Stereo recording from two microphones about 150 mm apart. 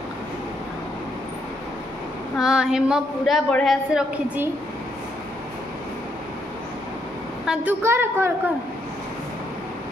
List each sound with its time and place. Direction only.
2.3 s female singing: 5° right (ahead or behind)
3.4 s a man's voice: 5° left (ahead or behind)
7.4 s a woman's voice: 5° right (ahead or behind)
7.8 s a woman's voice: 15° right (ahead or behind)